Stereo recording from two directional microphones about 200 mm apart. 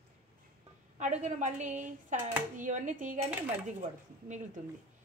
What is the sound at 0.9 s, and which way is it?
A woman's voice, 35° right (ahead or behind).